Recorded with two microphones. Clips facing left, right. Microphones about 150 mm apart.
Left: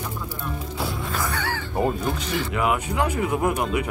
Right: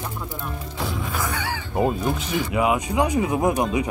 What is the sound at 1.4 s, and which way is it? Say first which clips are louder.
Speech: right 2 dB; 10° right (ahead or behind).